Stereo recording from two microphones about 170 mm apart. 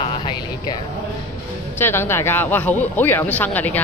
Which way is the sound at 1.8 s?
15° left (ahead or behind).